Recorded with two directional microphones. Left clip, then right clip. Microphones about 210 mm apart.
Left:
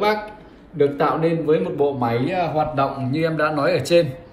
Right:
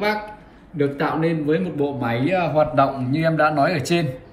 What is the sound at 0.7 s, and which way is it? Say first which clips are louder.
Speech: left 3 dB; 5° left (ahead or behind).